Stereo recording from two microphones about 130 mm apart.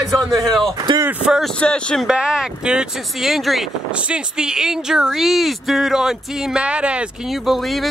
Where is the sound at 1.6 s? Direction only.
5° left (ahead or behind).